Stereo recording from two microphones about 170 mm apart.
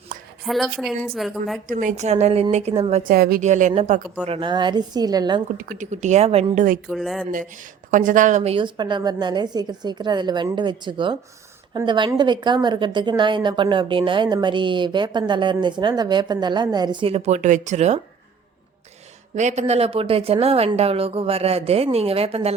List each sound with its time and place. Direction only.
0.4 s a woman's voice: centre (ahead or behind)
1.6 s a woman's voice: 50° right (ahead or behind); by 3.0 s 35° right (ahead or behind)
3.0 s speech: 60° right (ahead or behind)
3.4 s a woman's voice: 45° right (ahead or behind)
4.3 s a woman's voice: 30° right (ahead or behind)
5.5 s a woman's voice: 50° right (ahead or behind); by 6.7 s 35° right (ahead or behind)
6.8 s a woman's voice: centre (ahead or behind)
7.9 s a woman's voice: 50° right (ahead or behind)
8.5 s a woman's voice: 25° right (ahead or behind)
19.4 s a woman's voice: 40° right (ahead or behind)